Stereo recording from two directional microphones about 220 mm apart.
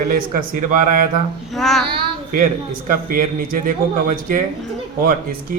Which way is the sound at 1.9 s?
35° right (ahead or behind).